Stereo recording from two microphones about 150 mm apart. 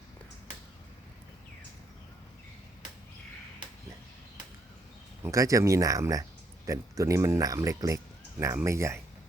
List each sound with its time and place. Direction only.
5.2 s speech: 20° right (ahead or behind)